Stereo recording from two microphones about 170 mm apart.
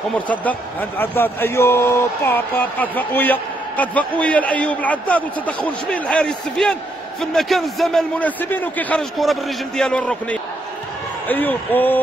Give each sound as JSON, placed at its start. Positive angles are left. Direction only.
{"t": 0.3, "sound": "speech", "side_deg": 10}